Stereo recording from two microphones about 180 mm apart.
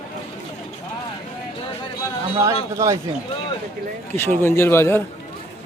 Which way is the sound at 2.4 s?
15° right (ahead or behind).